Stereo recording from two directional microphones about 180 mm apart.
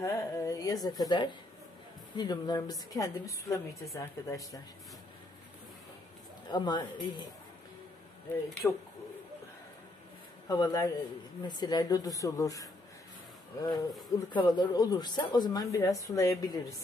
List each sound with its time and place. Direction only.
0.0 s speech: 20° left (ahead or behind)
6.5 s speech: 25° left (ahead or behind)
8.6 s speech: 10° left (ahead or behind)
10.5 s speech: 20° left (ahead or behind)